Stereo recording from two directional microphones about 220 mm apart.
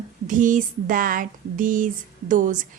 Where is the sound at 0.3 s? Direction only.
35° right (ahead or behind).